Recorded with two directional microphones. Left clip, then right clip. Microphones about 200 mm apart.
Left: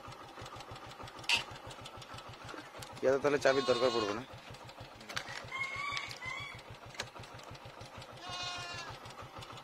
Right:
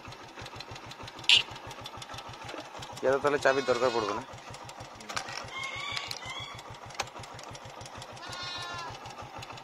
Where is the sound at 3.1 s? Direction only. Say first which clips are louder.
Right 3 dB; 35° left (ahead or behind).